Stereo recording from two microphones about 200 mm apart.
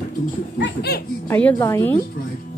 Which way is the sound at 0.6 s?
55° left (ahead or behind).